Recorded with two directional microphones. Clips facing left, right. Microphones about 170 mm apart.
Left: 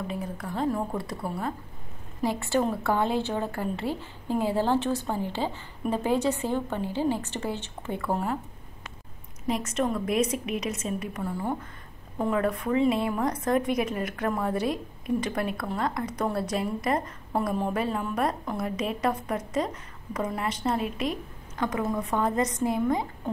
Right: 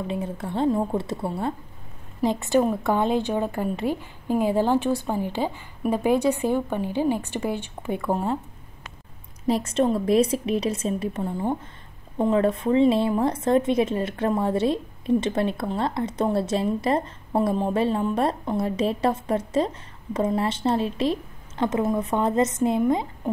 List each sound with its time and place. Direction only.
0.1 s a woman's voice: 25° right (ahead or behind)
9.5 s a woman's voice: 30° right (ahead or behind)